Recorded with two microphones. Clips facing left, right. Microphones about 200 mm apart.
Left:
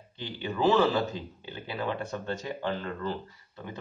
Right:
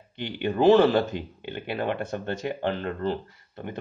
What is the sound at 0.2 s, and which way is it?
Speech, 65° right (ahead or behind).